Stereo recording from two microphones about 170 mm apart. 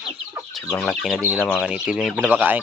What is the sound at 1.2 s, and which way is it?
Speech, 10° right (ahead or behind).